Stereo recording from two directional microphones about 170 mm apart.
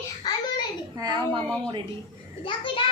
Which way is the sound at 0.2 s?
25° left (ahead or behind).